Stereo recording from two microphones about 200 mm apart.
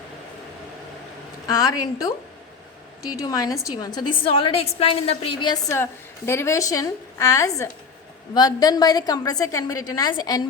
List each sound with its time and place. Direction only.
1.5 s a woman's voice: 20° left (ahead or behind)